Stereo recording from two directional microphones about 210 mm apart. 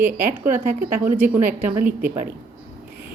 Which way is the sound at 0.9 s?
10° right (ahead or behind).